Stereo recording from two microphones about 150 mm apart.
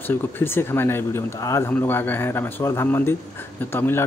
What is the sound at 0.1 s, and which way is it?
A man's voice, 15° left (ahead or behind).